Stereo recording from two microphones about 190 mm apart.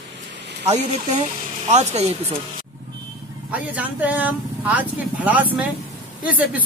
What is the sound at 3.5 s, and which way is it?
Speech, 10° right (ahead or behind).